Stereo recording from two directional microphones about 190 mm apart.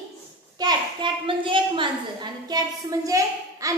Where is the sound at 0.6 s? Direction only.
25° right (ahead or behind).